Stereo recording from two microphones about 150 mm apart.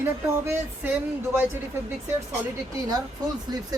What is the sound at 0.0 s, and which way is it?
Speech, 15° right (ahead or behind).